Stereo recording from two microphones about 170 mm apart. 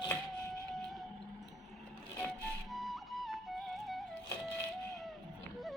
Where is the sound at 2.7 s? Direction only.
Centre (ahead or behind).